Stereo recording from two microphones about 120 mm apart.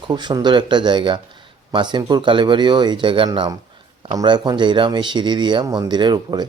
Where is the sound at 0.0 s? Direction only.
40° right (ahead or behind).